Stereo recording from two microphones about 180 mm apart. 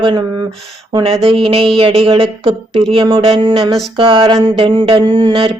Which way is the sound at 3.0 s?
25° right (ahead or behind).